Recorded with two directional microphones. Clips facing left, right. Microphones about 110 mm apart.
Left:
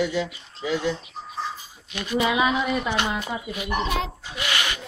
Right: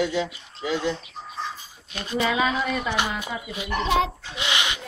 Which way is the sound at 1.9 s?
30° right (ahead or behind).